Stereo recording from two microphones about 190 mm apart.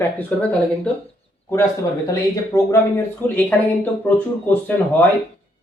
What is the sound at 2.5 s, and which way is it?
Speech, 15° left (ahead or behind).